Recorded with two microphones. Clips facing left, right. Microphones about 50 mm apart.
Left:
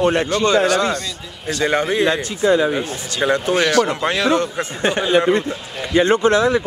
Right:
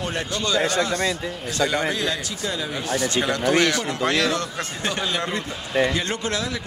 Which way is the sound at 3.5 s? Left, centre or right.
Left.